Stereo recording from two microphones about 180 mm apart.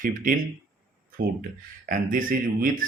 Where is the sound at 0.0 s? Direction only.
50° right (ahead or behind).